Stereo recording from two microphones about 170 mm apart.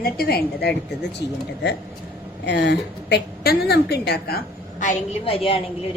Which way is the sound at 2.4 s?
90° left.